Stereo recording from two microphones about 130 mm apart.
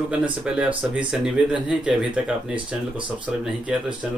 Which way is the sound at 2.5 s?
40° right (ahead or behind).